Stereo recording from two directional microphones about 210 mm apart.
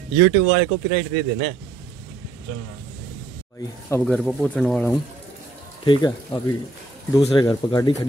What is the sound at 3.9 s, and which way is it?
Speech, 5° left (ahead or behind).